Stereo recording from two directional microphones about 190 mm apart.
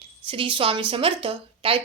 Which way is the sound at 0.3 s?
25° right (ahead or behind).